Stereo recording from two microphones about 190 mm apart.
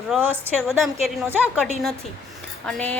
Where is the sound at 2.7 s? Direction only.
5° left (ahead or behind).